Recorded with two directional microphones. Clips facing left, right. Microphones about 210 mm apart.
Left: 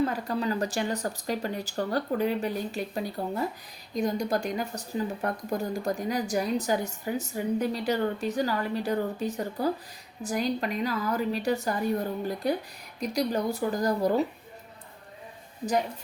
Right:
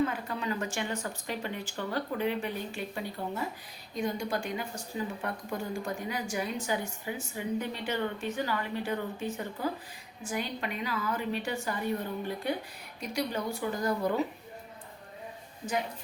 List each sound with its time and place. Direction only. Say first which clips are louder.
0.0 s a woman's voice: left 4 dB; 35° left (ahead or behind)